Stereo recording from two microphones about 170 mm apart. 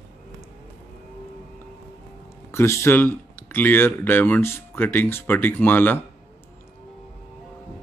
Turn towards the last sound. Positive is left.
turn(degrees=10)  # may be behind; listen again after turning